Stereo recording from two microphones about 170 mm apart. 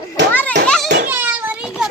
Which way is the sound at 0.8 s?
80° right.